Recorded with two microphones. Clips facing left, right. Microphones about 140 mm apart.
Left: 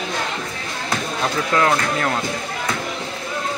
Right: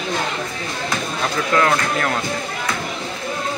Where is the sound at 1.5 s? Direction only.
15° left (ahead or behind).